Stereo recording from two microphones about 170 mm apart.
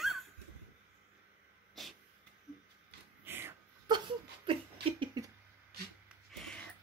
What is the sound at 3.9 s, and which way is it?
Laughter, 30° right (ahead or behind).